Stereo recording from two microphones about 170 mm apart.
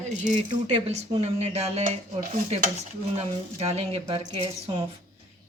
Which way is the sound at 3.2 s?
40° right (ahead or behind).